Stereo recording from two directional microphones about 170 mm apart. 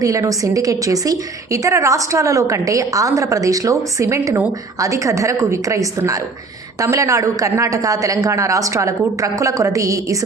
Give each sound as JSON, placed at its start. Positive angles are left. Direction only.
{"t": 0.0, "sound": "a woman's voice", "side_deg": -20}